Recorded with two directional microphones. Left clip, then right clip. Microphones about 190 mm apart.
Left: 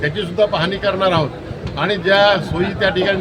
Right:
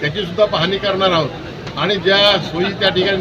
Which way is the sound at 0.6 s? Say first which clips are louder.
Right 1 dB; 20° left (ahead or behind).